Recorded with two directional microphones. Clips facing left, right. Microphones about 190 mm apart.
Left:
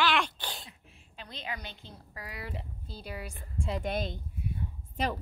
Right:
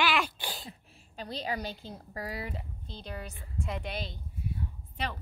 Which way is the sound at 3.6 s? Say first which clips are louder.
Left 2 dB; 30° left (ahead or behind).